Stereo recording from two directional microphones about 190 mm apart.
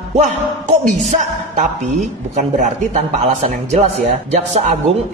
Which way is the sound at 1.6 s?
40° right (ahead or behind).